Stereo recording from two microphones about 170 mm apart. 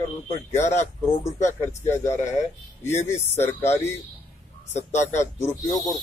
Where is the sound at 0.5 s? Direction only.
15° left (ahead or behind).